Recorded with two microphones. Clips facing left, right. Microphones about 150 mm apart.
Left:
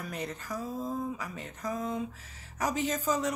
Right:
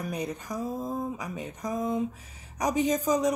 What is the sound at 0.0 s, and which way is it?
A woman's voice, 15° right (ahead or behind).